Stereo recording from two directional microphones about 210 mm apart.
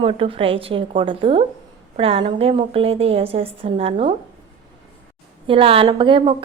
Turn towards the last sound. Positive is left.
turn(degrees=-25)  # may be behind; listen again after turning